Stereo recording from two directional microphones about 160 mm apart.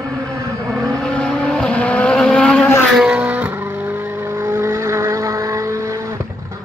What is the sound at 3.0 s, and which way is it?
Vehicle, 5° right (ahead or behind).